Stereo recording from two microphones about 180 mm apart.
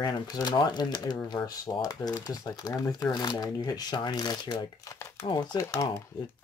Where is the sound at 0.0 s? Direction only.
25° left (ahead or behind).